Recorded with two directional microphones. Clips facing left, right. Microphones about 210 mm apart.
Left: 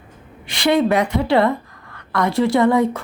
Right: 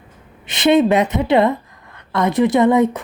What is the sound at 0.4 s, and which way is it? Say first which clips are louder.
A woman's voice: right 3 dB; 20° right (ahead or behind).